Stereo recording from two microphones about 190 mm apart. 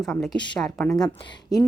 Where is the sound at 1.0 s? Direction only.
25° left (ahead or behind).